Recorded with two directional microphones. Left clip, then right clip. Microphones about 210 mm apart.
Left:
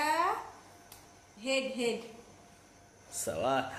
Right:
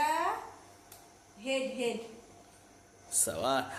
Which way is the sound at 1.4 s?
20° left (ahead or behind).